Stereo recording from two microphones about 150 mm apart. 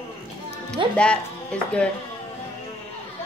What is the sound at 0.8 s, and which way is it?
Speech, 35° right (ahead or behind).